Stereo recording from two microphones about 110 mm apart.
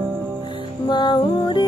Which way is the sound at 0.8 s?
45° left (ahead or behind).